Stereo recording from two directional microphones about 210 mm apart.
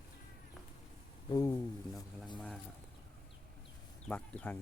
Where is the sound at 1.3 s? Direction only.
15° left (ahead or behind).